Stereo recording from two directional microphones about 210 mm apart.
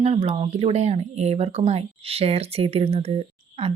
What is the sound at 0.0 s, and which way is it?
Speech, 30° right (ahead or behind).